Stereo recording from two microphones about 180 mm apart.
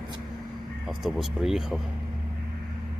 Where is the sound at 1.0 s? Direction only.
Centre (ahead or behind).